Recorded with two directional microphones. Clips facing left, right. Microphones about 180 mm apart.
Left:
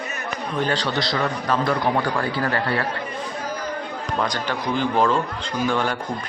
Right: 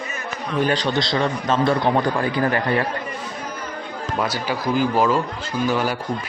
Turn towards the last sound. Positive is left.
turn(degrees=-5)  # may be behind; listen again after turning